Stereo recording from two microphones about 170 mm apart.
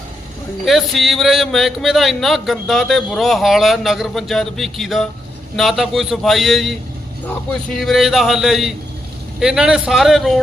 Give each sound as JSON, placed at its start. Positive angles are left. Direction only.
{"t": 0.6, "sound": "a man's voice", "side_deg": 0}